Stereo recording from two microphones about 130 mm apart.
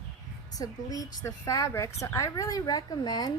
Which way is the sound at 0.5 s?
25° left (ahead or behind).